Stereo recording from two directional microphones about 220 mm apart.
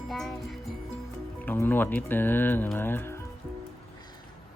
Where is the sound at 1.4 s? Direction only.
10° left (ahead or behind).